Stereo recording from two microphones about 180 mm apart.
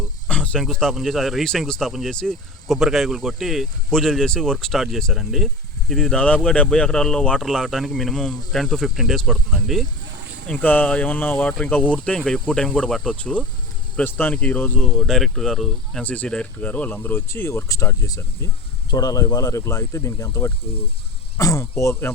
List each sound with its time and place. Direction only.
0.3 s speech: 5° left (ahead or behind)